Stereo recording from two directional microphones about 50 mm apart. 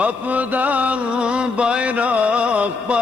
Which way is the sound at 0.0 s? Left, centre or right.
Right.